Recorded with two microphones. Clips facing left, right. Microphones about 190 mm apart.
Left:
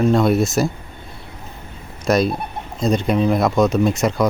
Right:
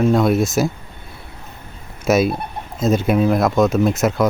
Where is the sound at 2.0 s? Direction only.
5° right (ahead or behind).